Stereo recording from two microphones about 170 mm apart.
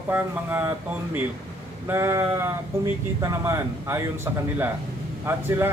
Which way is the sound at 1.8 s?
15° right (ahead or behind).